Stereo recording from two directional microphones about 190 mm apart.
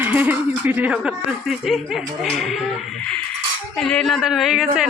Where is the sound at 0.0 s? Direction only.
10° right (ahead or behind).